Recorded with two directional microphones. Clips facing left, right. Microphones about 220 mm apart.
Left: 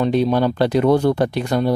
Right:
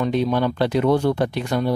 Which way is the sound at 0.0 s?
35° left (ahead or behind).